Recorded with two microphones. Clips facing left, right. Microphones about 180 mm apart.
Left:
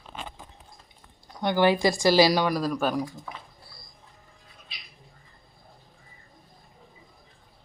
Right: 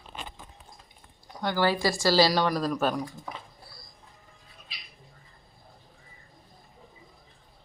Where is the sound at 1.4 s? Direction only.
20° left (ahead or behind); by 3.0 s 5° left (ahead or behind).